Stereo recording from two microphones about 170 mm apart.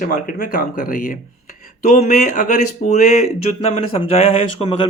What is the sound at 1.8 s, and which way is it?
Speech, 40° left (ahead or behind).